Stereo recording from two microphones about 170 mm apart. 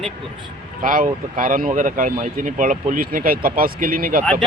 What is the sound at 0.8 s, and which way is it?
Speech, 55° right (ahead or behind).